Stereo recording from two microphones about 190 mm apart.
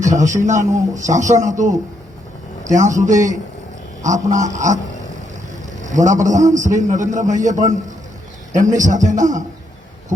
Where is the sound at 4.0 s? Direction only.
40° right (ahead or behind).